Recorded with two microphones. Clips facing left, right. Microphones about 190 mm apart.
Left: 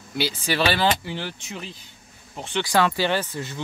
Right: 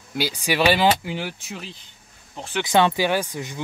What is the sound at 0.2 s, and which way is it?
Speech, 15° right (ahead or behind).